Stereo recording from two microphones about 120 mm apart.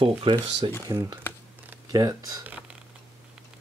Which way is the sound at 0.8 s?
25° right (ahead or behind).